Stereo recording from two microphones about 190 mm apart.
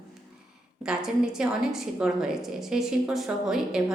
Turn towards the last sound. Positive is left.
turn(degrees=0)  # may be behind; listen again after turning